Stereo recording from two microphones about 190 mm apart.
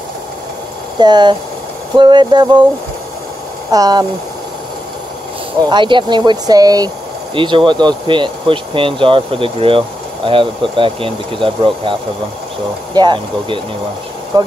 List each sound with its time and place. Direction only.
0.9 s speech: 20° right (ahead or behind)
3.7 s speech: 20° right (ahead or behind)
5.6 s speech: 25° right (ahead or behind)